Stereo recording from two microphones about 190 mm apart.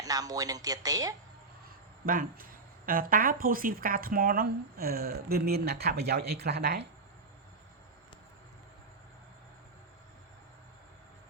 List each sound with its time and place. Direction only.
0.0 s a woman's voice: 20° right (ahead or behind)
2.0 s speech: 45° right (ahead or behind)